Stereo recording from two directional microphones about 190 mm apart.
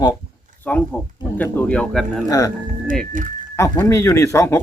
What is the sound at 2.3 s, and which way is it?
Speech, 15° left (ahead or behind).